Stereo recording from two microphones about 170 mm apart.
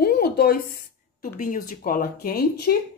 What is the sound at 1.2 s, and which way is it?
Speech, 50° left (ahead or behind).